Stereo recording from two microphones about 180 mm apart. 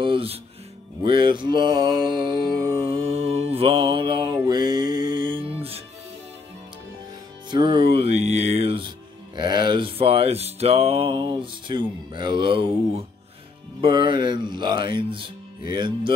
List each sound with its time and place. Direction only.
0.0 s speech: 30° right (ahead or behind)
1.0 s mantra: 25° right (ahead or behind)
7.5 s speech: 25° right (ahead or behind)